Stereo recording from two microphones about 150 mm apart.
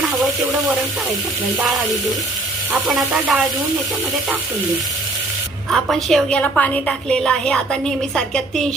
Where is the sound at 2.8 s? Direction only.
5° right (ahead or behind).